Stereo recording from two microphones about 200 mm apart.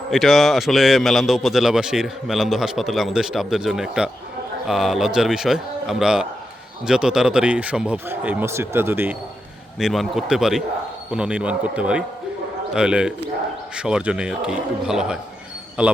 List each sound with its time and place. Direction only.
0.1 s a man's voice: centre (ahead or behind)